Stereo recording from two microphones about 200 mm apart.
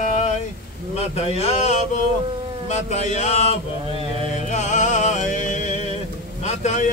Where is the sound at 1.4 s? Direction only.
30° left (ahead or behind).